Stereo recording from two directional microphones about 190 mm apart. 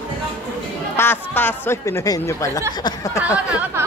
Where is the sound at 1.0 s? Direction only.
10° left (ahead or behind).